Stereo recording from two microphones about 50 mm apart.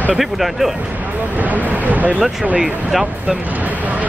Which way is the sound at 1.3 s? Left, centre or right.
Right.